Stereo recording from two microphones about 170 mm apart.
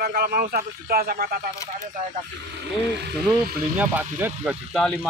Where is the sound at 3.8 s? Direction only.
10° right (ahead or behind).